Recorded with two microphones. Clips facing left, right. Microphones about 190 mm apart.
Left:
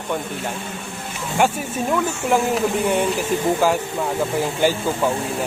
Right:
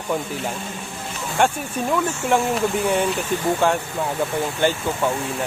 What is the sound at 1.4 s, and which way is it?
A man's voice, 5° left (ahead or behind).